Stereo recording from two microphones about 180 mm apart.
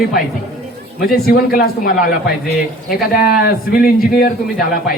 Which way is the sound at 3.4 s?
55° left (ahead or behind).